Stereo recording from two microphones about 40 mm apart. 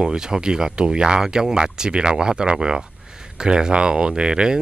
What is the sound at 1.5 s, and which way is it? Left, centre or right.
Speech, right.